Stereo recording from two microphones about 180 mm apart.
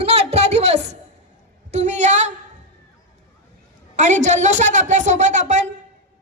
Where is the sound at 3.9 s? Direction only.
40° right (ahead or behind).